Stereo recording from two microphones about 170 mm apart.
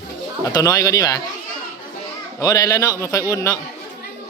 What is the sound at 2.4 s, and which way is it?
Speech, 20° left (ahead or behind).